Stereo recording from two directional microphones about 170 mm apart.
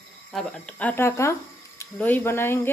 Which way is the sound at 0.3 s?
5° left (ahead or behind).